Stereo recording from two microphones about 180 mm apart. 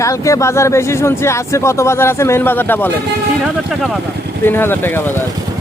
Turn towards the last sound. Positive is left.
turn(degrees=10)  # may be behind; listen again after turning